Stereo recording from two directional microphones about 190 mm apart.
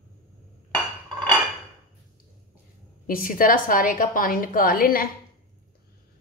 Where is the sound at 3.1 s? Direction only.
50° left (ahead or behind).